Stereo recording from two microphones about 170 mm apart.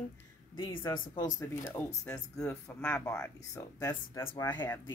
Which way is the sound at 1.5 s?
15° left (ahead or behind).